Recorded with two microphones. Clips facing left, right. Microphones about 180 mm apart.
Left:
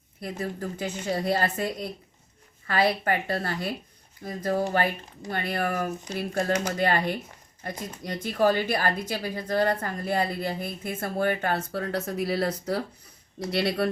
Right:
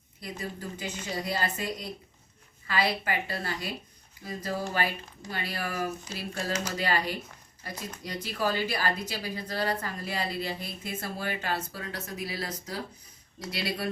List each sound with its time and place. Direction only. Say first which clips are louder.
0.2 s a woman's voice: left 5 dB; 55° left (ahead or behind)